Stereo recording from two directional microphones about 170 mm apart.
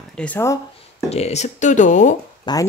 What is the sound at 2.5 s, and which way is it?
Speech, 25° left (ahead or behind).